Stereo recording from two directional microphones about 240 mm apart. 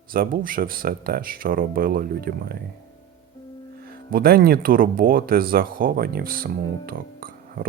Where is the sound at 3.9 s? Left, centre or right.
Right.